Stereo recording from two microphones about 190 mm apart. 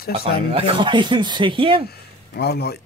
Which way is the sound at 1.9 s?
55° left (ahead or behind).